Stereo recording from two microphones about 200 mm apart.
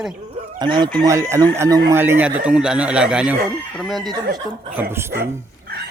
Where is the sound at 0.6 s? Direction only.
20° right (ahead or behind); by 4.1 s centre (ahead or behind).